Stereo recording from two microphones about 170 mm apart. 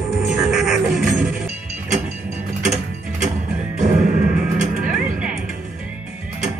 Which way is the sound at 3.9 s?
50° right (ahead or behind).